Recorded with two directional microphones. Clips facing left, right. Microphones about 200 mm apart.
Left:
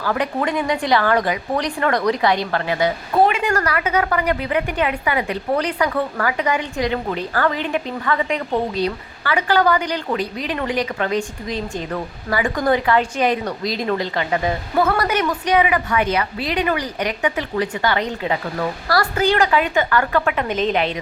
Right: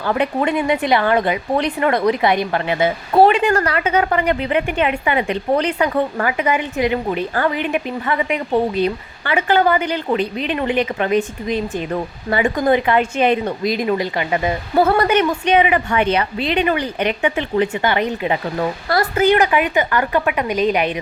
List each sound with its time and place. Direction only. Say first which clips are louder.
0.0 s a woman's voice: right 3 dB; 25° right (ahead or behind)